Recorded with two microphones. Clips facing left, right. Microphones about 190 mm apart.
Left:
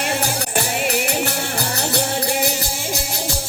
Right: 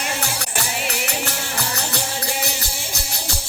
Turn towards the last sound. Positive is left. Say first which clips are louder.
# left 6 dB
turn(degrees=55)  # may be behind; listen again after turning